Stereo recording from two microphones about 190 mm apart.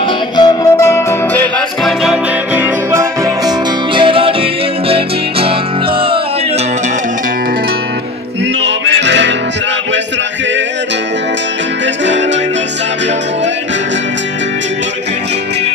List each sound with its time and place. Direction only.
0.4 s music: 20° left (ahead or behind); by 3.5 s 15° right (ahead or behind)
3.9 s music: 25° right (ahead or behind)
8.6 s music: 70° right (ahead or behind)